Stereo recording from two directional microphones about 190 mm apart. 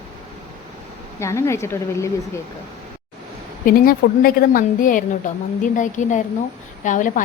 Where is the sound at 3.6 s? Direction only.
50° left (ahead or behind).